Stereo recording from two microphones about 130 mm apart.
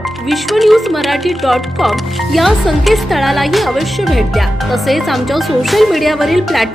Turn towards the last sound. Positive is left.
turn(degrees=0)  # may be behind; listen again after turning